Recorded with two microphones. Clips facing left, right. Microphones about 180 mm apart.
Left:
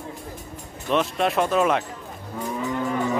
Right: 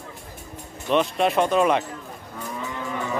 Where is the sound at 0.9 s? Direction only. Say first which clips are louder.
Right 1 dB; centre (ahead or behind).